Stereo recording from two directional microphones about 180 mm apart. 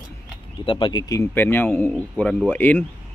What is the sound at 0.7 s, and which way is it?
Speech, 25° left (ahead or behind).